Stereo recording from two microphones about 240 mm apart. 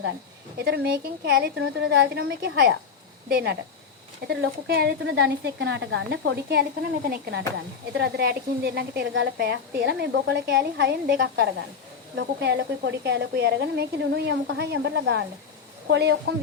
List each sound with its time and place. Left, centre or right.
0.6 s a woman's voice: right